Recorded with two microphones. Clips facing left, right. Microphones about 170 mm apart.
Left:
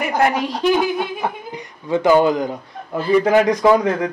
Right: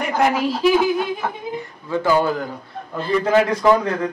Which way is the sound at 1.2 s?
20° left (ahead or behind).